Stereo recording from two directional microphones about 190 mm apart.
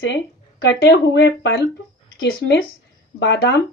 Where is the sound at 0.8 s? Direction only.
65° left (ahead or behind).